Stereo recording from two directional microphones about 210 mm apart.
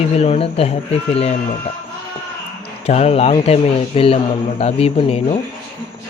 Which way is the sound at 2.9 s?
30° left (ahead or behind).